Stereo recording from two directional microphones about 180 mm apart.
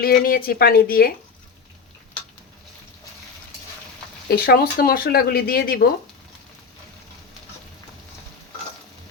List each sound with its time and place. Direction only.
0.0 s speech: 55° left (ahead or behind)
4.3 s speech: 60° left (ahead or behind)